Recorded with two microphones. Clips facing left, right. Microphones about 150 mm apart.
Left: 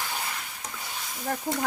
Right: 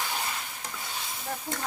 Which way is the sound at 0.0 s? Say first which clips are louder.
Right 1 dB; 5° right (ahead or behind).